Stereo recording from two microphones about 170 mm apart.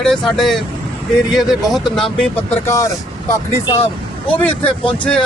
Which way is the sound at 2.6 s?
20° left (ahead or behind).